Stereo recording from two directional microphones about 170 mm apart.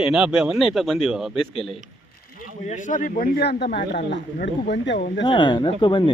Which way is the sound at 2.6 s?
45° left (ahead or behind).